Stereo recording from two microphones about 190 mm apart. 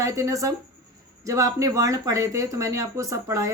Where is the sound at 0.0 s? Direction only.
15° right (ahead or behind).